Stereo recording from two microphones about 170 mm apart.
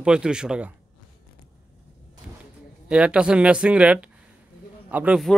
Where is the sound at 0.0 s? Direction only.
5° right (ahead or behind).